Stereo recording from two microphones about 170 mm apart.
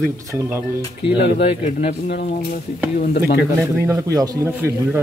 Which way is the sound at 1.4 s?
40° left (ahead or behind).